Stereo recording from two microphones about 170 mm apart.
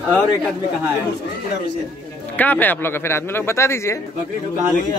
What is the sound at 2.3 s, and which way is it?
A man's voice, 10° left (ahead or behind).